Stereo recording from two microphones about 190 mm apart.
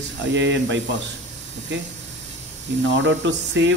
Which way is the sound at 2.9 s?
75° right (ahead or behind).